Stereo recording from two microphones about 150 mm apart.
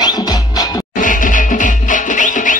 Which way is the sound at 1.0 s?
65° left (ahead or behind).